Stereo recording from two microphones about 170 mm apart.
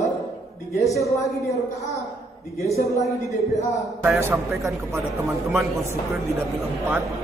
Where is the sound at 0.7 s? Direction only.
20° left (ahead or behind).